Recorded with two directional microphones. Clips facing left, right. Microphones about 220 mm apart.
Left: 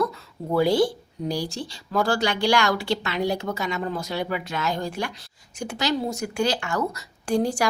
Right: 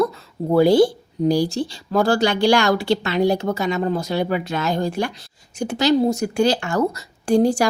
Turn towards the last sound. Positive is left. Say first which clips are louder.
# right 7 dB
turn(degrees=-30)  # may be behind; listen again after turning